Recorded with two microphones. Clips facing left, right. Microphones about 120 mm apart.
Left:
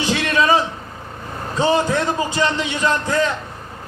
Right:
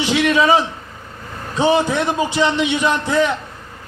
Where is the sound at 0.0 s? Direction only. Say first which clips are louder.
Right 3 dB; 15° right (ahead or behind).